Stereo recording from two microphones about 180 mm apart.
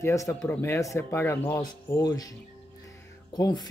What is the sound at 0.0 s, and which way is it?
Speech, 15° left (ahead or behind).